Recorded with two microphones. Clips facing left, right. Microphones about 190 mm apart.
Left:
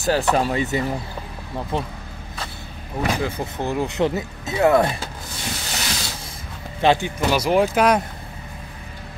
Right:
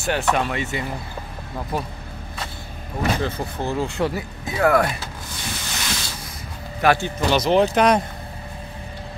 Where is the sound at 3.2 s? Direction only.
15° left (ahead or behind).